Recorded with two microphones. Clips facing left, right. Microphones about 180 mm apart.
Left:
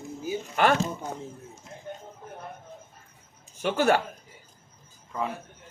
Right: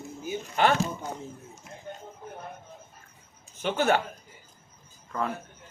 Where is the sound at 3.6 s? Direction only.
45° left (ahead or behind).